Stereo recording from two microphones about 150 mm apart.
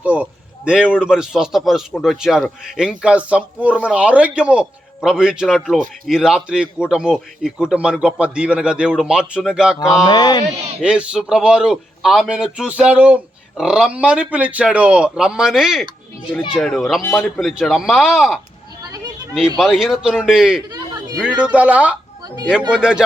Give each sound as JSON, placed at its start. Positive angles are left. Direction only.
{"t": 0.0, "sound": "a man's voice", "side_deg": -10}
{"t": 10.1, "sound": "speech", "side_deg": 25}
{"t": 10.8, "sound": "a man's voice", "side_deg": -5}
{"t": 17.0, "sound": "speech", "side_deg": 15}
{"t": 17.4, "sound": "a man's voice", "side_deg": 0}
{"t": 18.9, "sound": "a sound", "side_deg": -25}
{"t": 19.5, "sound": "a man's voice", "side_deg": 0}
{"t": 20.7, "sound": "a sound", "side_deg": -25}
{"t": 21.2, "sound": "a man's voice", "side_deg": -5}